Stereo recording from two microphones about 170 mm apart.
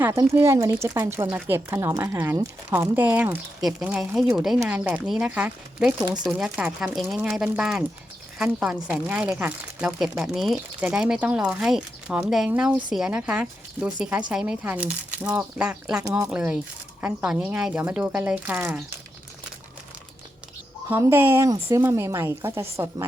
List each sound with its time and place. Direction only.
0.0 s speech: 15° right (ahead or behind)
20.9 s speech: 15° right (ahead or behind)